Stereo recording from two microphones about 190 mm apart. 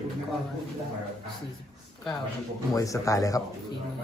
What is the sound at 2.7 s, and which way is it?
Speech, 15° left (ahead or behind).